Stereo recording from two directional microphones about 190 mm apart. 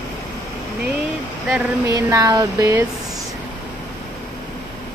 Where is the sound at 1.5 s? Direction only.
10° right (ahead or behind).